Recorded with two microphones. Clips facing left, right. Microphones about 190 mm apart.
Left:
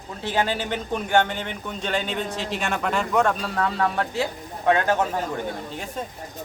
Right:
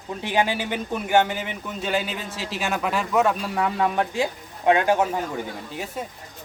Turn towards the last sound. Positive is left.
turn(degrees=-10)  # may be behind; listen again after turning